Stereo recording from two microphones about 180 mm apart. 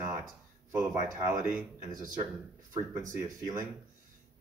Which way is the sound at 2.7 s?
20° right (ahead or behind).